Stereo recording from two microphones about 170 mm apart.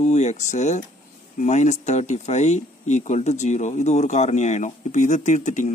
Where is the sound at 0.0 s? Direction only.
45° left (ahead or behind).